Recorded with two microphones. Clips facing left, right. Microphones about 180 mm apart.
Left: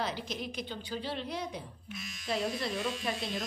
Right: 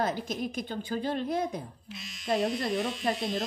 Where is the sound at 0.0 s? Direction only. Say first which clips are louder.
Right 6 dB; 50° right (ahead or behind).